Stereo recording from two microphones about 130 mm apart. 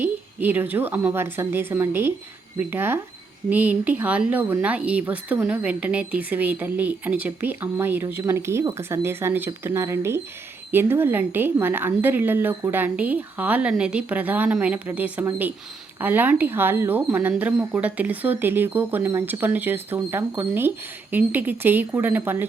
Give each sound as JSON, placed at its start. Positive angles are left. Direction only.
{"t": 0.0, "sound": "speech", "side_deg": -15}